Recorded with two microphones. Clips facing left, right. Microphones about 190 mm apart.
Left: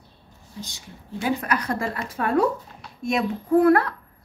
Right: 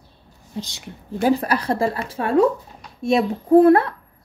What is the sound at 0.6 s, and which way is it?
Speech, 80° right.